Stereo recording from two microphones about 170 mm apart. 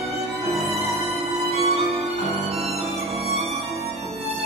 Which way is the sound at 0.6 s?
35° right (ahead or behind).